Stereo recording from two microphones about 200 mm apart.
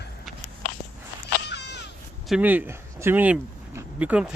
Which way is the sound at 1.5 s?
55° left (ahead or behind).